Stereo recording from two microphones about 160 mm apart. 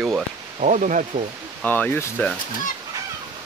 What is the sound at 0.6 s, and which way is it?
Speech, 50° right (ahead or behind).